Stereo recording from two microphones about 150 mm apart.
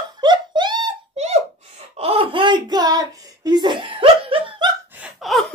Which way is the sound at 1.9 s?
40° right (ahead or behind).